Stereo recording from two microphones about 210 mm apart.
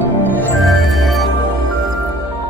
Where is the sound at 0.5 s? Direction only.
Centre (ahead or behind).